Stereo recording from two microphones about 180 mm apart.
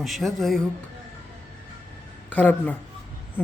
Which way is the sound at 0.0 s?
Centre (ahead or behind).